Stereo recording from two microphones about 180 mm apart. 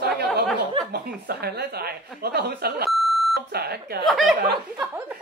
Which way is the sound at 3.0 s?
Centre (ahead or behind).